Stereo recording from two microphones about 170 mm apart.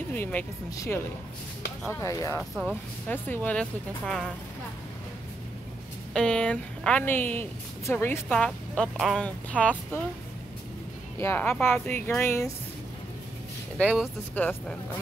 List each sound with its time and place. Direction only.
0.1 s speech: 10° left (ahead or behind)
2.5 s speech: 5° right (ahead or behind)
3.1 s speech: 10° left (ahead or behind)
6.1 s speech: 5° left (ahead or behind)
11.1 s speech: 15° left (ahead or behind)
13.7 s speech: 5° right (ahead or behind)
14.3 s speech: 10° left (ahead or behind)